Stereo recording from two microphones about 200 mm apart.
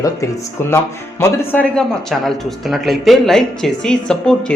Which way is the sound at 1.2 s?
15° left (ahead or behind).